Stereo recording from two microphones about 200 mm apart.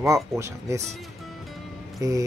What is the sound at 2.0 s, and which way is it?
Speech, 15° right (ahead or behind).